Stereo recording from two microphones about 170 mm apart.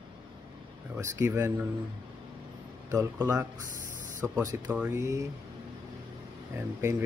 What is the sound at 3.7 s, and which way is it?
Spray, 50° right (ahead or behind).